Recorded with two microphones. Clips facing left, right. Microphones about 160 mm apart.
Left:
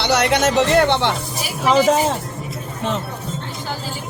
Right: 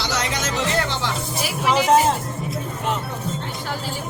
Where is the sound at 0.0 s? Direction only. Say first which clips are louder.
Left 8 dB; 65° left (ahead or behind).